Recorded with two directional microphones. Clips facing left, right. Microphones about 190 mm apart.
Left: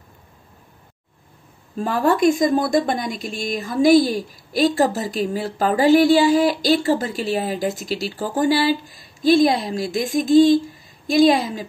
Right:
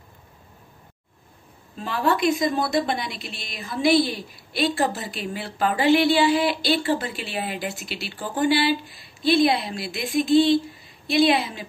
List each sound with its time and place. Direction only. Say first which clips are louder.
1.8 s a woman's voice: left 5 dB; 45° left (ahead or behind)